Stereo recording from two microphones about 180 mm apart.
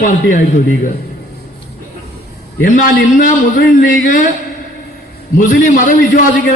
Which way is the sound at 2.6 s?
45° left (ahead or behind).